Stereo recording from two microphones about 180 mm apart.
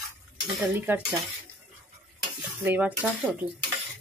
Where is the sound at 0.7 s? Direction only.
10° right (ahead or behind).